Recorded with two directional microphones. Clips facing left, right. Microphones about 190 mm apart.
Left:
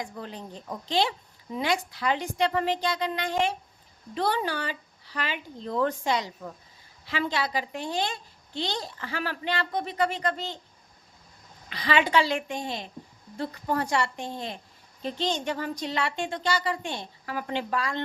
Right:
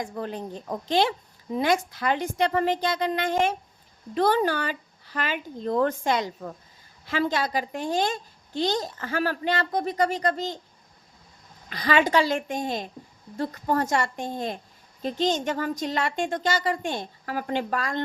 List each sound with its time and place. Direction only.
0.0 s a woman's voice: 50° right (ahead or behind)
11.7 s a woman's voice: 45° right (ahead or behind)